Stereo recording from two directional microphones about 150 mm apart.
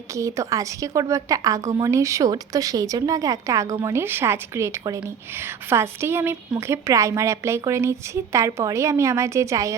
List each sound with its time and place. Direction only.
0.1 s a woman's voice: 20° right (ahead or behind)